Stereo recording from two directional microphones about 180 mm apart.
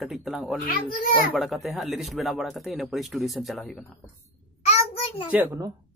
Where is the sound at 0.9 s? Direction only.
50° left (ahead or behind).